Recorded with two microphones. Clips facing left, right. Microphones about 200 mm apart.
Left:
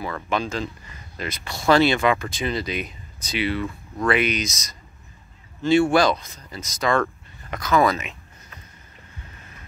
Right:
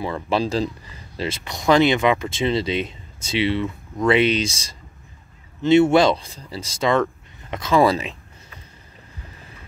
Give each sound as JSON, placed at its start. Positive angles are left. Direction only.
{"t": 0.0, "sound": "speech", "side_deg": -30}